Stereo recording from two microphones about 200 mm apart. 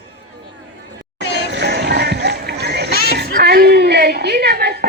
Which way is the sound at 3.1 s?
55° right (ahead or behind).